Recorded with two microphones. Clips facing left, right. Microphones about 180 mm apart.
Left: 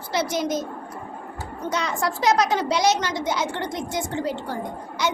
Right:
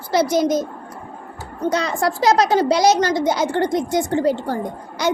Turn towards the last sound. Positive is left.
turn(degrees=-40)  # may be behind; listen again after turning